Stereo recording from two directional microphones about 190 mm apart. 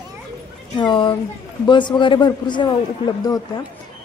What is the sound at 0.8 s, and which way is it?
A man's voice, 25° left (ahead or behind).